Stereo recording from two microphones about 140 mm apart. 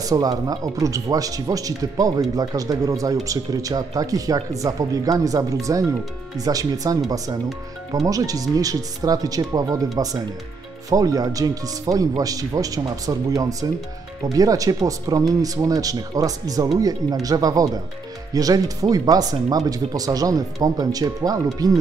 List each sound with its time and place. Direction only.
0.0 s speech: 25° right (ahead or behind)